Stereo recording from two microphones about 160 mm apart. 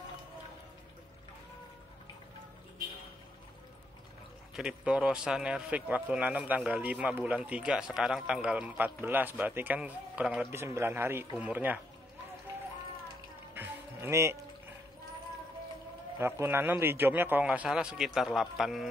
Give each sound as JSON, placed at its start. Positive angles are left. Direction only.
{"t": 4.6, "sound": "speech", "side_deg": -5}
{"t": 13.6, "sound": "music", "side_deg": -15}
{"t": 16.2, "sound": "speech", "side_deg": -15}